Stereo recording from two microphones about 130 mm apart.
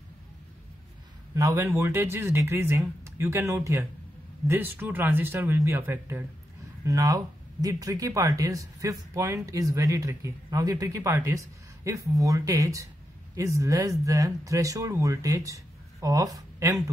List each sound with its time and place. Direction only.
1.3 s speech: 25° right (ahead or behind)